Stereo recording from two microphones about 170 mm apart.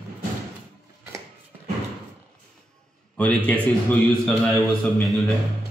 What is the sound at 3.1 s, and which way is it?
A man's voice, 10° left (ahead or behind).